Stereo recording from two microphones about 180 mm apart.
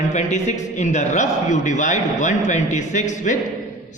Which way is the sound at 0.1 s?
40° left (ahead or behind).